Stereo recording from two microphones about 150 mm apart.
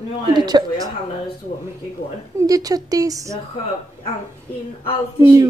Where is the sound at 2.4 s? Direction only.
25° right (ahead or behind).